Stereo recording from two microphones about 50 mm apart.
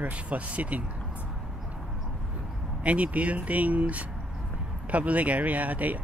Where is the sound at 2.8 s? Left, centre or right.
Right.